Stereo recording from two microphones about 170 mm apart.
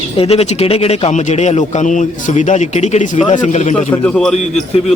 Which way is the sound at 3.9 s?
5° left (ahead or behind).